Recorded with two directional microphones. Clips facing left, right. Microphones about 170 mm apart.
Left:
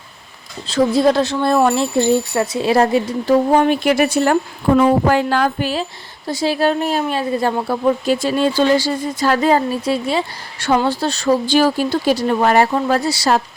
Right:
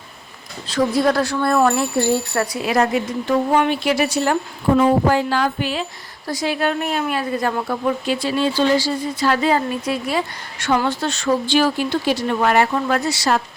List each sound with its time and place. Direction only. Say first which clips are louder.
0.7 s speech: left 3 dB; 25° left (ahead or behind); by 4.4 s 55° left (ahead or behind)
4.8 s music: left 2 dB; 60° left (ahead or behind); by 5.8 s 40° left (ahead or behind)
6.2 s a woman's voice: left 4 dB; 30° left (ahead or behind)